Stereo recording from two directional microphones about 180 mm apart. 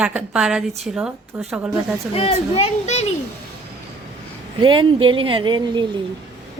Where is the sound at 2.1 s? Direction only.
35° left (ahead or behind).